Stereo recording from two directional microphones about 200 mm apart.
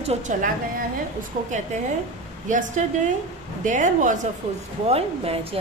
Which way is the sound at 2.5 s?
40° right (ahead or behind).